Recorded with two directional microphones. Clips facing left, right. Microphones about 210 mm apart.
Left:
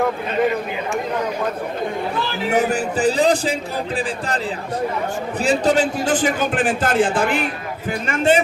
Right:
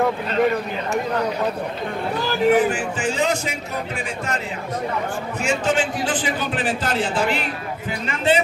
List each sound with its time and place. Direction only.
2.5 s music: 40° left (ahead or behind)
5.4 s a man's voice: 35° left (ahead or behind)